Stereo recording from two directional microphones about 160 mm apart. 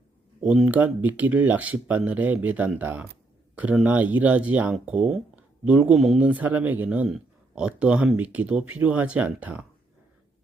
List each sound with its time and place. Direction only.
0.4 s speech: 5° right (ahead or behind)